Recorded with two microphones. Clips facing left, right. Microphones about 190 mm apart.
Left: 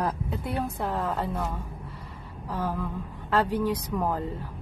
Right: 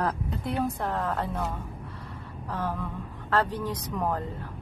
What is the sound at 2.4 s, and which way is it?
A woman's voice, 5° left (ahead or behind).